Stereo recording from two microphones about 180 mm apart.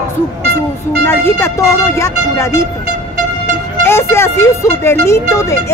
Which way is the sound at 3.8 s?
15° left (ahead or behind).